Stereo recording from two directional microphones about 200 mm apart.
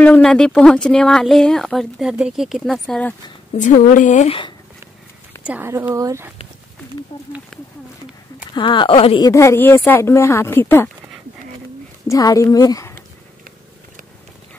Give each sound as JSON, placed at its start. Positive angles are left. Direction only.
{"t": 0.0, "sound": "speech", "side_deg": 5}
{"t": 3.5, "sound": "a woman's voice", "side_deg": 35}
{"t": 5.4, "sound": "speech", "side_deg": -10}
{"t": 8.5, "sound": "speech", "side_deg": 25}
{"t": 9.3, "sound": "a woman's voice", "side_deg": 15}
{"t": 12.1, "sound": "a woman's voice", "side_deg": 15}